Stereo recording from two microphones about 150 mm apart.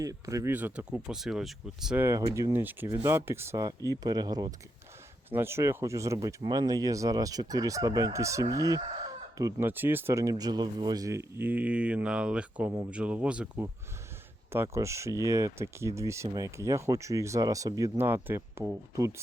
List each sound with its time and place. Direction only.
0.0 s speech: 20° right (ahead or behind)
0.5 s speech: 10° right (ahead or behind)
2.0 s speech: 15° right (ahead or behind)
14.5 s speech: 20° right (ahead or behind)